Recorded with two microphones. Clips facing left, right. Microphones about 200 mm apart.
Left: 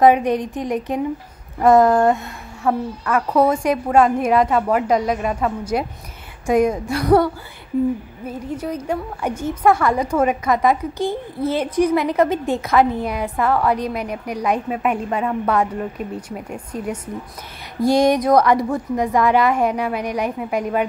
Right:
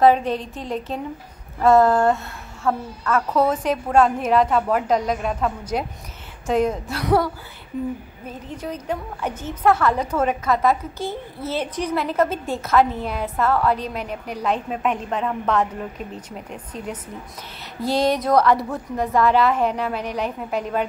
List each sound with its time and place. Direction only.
0.0 s a woman's voice: 15° left (ahead or behind)
8.3 s a woman's voice: 10° left (ahead or behind)